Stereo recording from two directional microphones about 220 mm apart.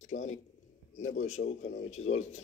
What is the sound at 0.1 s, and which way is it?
Speech, 35° left (ahead or behind).